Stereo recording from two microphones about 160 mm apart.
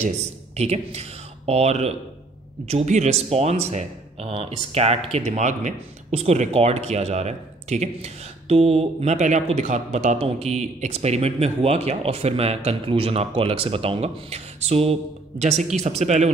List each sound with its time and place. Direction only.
0.6 s speech: 40° right (ahead or behind)